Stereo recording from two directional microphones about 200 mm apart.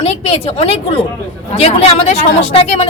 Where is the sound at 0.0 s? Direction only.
30° left (ahead or behind).